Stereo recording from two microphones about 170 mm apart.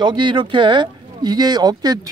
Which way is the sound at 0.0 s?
25° right (ahead or behind).